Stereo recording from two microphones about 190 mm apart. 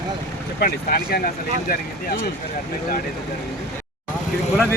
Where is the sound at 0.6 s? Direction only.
55° left (ahead or behind).